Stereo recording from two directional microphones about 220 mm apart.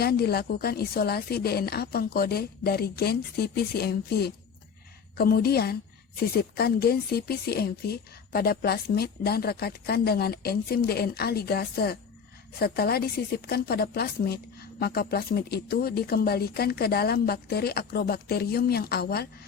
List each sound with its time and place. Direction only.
0.0 s a woman's voice: 45° left (ahead or behind)